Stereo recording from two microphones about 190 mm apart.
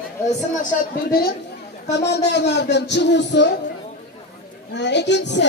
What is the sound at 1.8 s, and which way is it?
A man's voice, 65° left (ahead or behind).